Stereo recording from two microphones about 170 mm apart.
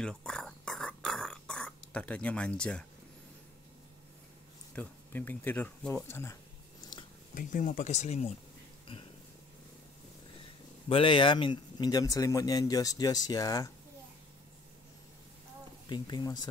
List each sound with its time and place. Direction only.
0.0 s whispering: 5° left (ahead or behind)
4.7 s speech: 10° left (ahead or behind)
6.8 s a sound: 25° left (ahead or behind)
7.3 s speech: 55° left (ahead or behind)
10.9 s speech: 30° left (ahead or behind)
15.9 s speech: 25° left (ahead or behind)